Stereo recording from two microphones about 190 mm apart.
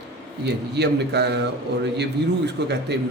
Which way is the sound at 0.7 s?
60° right (ahead or behind).